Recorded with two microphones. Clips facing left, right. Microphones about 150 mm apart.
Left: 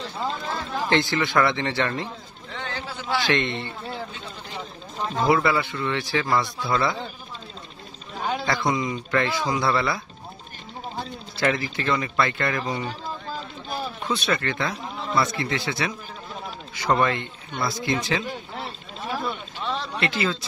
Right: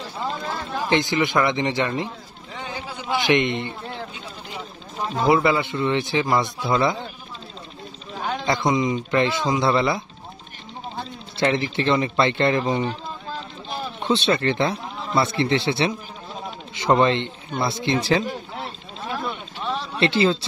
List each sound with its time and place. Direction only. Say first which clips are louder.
0.4 s speech: right 1 dB; 10° right (ahead or behind)
2.5 s a sound: right 1 dB; 10° right (ahead or behind)
5.2 s a man's voice: right 2 dB; 20° right (ahead or behind)
8.5 s a man's voice: right 6 dB; 20° right (ahead or behind)
11.3 s a man's voice: right 3 dB; 25° right (ahead or behind)
13.9 s a man's voice: right 6 dB; 25° right (ahead or behind)
14.8 s a sound: even; centre (ahead or behind)
15.1 s a man's voice: right 4 dB; 30° right (ahead or behind)
19.1 s a sound: even; centre (ahead or behind)
20.0 s a man's voice: right 9 dB; 30° right (ahead or behind)